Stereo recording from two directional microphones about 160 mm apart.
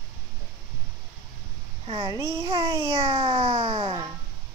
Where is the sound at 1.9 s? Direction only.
30° right (ahead or behind).